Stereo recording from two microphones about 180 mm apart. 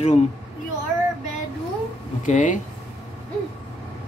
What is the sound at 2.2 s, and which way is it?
Speech, 45° left (ahead or behind).